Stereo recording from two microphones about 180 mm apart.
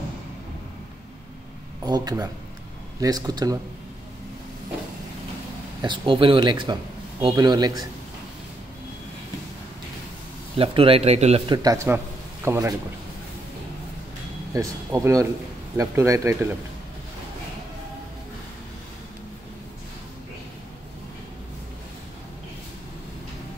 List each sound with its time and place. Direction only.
1.9 s a man's voice: 20° right (ahead or behind)
5.8 s a man's voice: 25° right (ahead or behind)
10.6 s a man's voice: 30° right (ahead or behind)
14.5 s speech: 15° right (ahead or behind)